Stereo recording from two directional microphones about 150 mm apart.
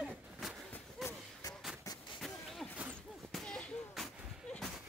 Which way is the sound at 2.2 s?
5° right (ahead or behind).